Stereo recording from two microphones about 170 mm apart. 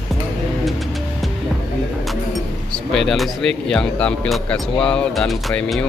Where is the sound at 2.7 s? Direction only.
Centre (ahead or behind).